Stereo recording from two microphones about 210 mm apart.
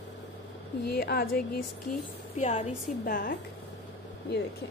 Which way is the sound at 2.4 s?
35° left (ahead or behind).